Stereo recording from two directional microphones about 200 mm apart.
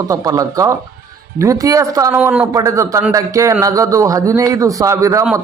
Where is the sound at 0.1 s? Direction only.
15° right (ahead or behind).